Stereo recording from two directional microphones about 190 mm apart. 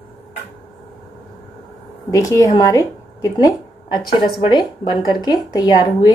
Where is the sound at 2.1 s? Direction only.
15° left (ahead or behind).